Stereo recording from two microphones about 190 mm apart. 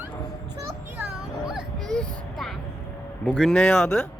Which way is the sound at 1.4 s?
Centre (ahead or behind).